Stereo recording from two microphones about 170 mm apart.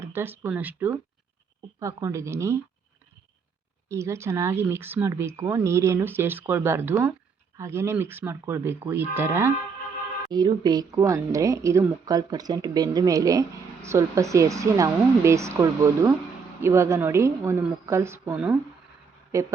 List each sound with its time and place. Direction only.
0.0 s speech: 15° right (ahead or behind)
3.8 s speech: 15° right (ahead or behind)